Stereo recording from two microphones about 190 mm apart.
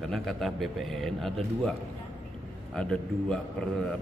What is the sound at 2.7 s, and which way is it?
Speech, 5° left (ahead or behind).